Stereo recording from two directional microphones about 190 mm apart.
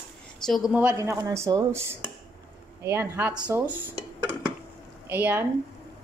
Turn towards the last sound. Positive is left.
turn(degrees=-10)  # may be behind; listen again after turning